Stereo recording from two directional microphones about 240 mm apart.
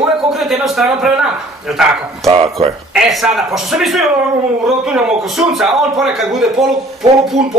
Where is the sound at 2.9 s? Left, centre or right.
Centre.